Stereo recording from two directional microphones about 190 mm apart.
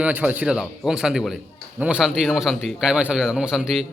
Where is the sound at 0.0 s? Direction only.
10° right (ahead or behind).